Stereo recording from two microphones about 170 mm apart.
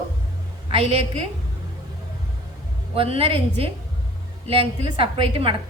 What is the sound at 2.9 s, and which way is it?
A woman's voice, 35° right (ahead or behind).